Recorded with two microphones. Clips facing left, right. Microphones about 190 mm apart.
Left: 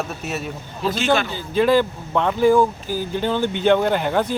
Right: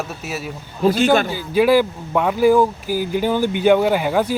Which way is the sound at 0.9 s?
50° right (ahead or behind).